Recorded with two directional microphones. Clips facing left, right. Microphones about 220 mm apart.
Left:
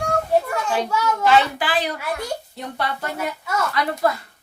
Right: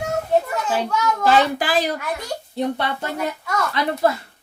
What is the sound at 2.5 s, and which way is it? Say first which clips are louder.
Speech: right 5 dB; 25° right (ahead or behind).